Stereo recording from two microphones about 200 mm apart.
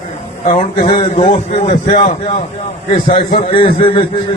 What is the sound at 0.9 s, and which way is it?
A man's voice, 25° left (ahead or behind).